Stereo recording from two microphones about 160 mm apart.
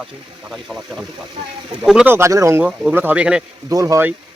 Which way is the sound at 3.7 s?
20° right (ahead or behind).